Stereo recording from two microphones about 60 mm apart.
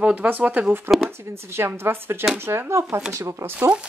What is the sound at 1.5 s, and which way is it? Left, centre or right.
A woman's voice, right.